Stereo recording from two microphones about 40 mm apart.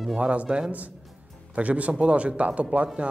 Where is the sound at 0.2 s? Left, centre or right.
Right.